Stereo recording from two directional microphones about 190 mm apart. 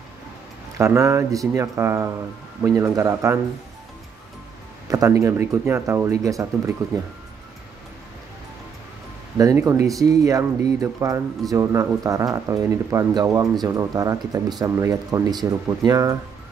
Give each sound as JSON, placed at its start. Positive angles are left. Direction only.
{"t": 0.7, "sound": "speech", "side_deg": -15}
{"t": 4.8, "sound": "speech", "side_deg": -15}
{"t": 9.4, "sound": "speech", "side_deg": -15}